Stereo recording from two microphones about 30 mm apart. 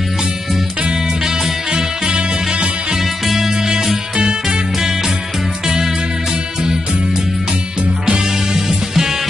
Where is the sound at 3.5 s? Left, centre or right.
Centre.